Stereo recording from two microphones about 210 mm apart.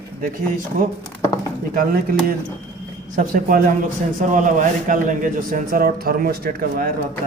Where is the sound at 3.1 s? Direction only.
40° right (ahead or behind).